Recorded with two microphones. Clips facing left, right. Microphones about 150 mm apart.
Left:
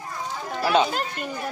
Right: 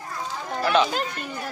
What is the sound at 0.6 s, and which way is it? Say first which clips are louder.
Speech: even; 5° left (ahead or behind).